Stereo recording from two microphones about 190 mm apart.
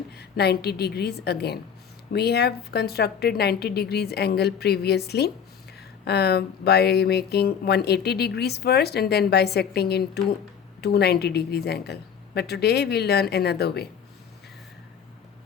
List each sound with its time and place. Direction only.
0.1 s speech: 60° left (ahead or behind)